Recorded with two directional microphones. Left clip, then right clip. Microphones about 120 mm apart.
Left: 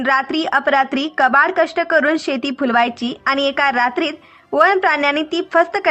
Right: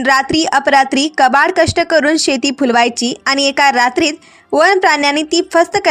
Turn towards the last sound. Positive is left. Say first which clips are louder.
# right 4 dB
turn(degrees=-45)  # may be behind; listen again after turning